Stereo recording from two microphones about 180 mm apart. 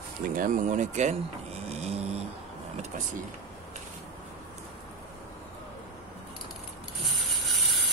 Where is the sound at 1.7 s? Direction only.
35° right (ahead or behind).